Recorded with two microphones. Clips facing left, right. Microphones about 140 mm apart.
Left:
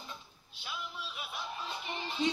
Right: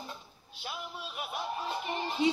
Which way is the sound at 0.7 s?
50° right (ahead or behind).